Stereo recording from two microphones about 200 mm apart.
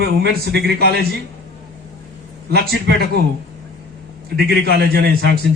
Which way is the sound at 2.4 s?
50° right (ahead or behind).